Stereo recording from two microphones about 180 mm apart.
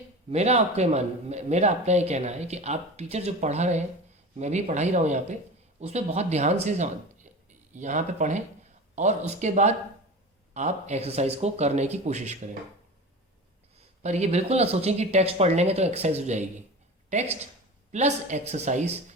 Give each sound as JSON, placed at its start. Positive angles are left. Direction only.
{"t": 0.3, "sound": "speech", "side_deg": -35}
{"t": 14.0, "sound": "speech", "side_deg": -40}